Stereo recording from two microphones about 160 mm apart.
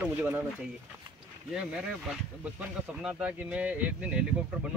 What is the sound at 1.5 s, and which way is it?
Speech, 5° right (ahead or behind).